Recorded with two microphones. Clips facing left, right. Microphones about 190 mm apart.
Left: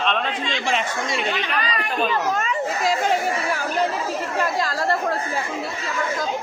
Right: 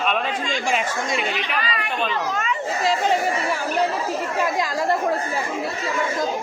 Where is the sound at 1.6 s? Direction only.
40° left (ahead or behind).